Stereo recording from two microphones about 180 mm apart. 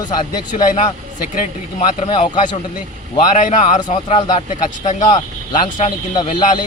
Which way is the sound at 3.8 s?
30° left (ahead or behind).